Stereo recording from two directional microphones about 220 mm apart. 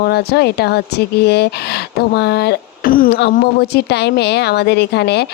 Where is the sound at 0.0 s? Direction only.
45° left (ahead or behind).